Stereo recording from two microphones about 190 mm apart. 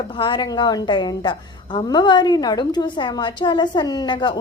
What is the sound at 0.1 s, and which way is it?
A woman's voice, 25° left (ahead or behind).